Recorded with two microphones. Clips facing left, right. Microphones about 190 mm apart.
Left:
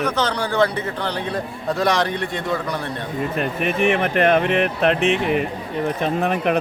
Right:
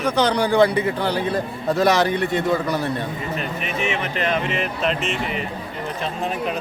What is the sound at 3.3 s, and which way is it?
Speech, 55° left (ahead or behind).